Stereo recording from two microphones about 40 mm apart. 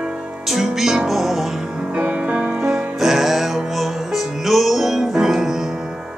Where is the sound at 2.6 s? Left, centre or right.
Centre.